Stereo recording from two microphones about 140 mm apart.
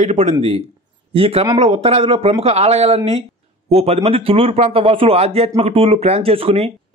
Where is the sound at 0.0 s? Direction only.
55° right (ahead or behind).